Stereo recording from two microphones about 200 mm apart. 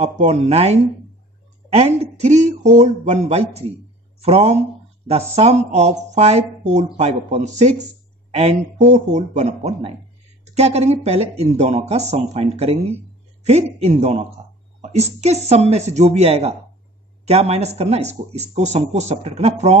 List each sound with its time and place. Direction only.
0.0 s speech: 35° right (ahead or behind)